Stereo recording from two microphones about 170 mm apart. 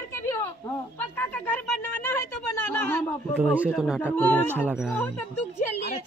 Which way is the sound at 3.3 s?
5° right (ahead or behind).